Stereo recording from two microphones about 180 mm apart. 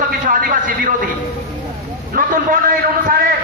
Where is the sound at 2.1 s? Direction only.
50° right (ahead or behind).